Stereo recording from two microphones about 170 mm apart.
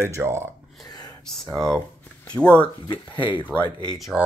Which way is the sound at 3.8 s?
Centre (ahead or behind).